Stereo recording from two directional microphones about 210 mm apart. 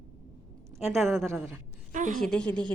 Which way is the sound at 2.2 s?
5° left (ahead or behind).